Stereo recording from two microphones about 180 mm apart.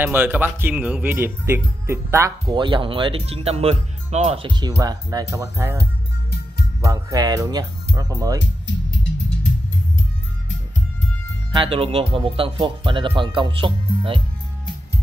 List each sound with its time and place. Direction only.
0.0 s speech: 10° right (ahead or behind)
6.8 s speech: 20° right (ahead or behind)
8.6 s music: 90° left
11.5 s speech: 30° right (ahead or behind)